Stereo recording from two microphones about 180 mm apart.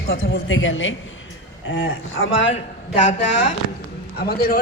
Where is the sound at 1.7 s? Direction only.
75° left (ahead or behind).